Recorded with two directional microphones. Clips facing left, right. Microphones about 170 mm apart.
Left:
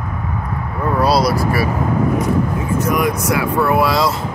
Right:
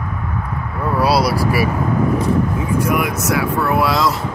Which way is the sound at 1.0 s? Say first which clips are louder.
Left 1 dB; 5° right (ahead or behind).